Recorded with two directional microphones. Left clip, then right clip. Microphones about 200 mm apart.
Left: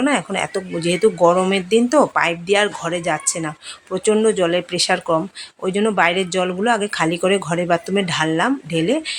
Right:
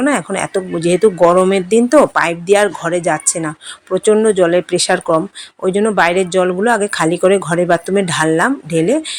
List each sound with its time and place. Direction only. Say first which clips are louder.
0.0 s speech: right 3 dB; 15° right (ahead or behind)